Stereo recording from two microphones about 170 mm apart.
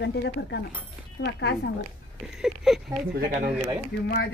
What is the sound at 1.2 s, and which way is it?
Speech, 70° left (ahead or behind).